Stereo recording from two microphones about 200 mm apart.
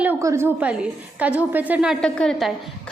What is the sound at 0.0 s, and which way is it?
A woman's voice, 15° right (ahead or behind).